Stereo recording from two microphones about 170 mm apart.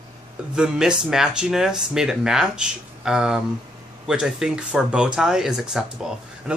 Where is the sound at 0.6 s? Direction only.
5° right (ahead or behind).